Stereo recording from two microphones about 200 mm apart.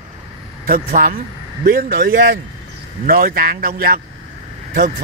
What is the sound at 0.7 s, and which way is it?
A man's voice, 45° right (ahead or behind).